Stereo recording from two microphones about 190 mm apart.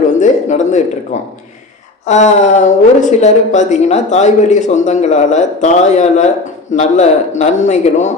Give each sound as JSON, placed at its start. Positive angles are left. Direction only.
{"t": 0.2, "sound": "a woman's voice", "side_deg": 40}